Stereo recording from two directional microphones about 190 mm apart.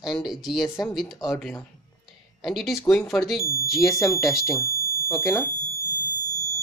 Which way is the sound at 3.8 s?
15° left (ahead or behind).